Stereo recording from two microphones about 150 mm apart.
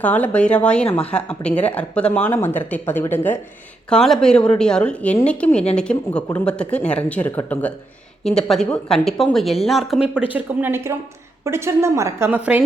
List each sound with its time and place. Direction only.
0.0 s speech: 10° left (ahead or behind)
3.8 s a woman's voice: 5° left (ahead or behind)
10.3 s a woman's voice: 15° right (ahead or behind)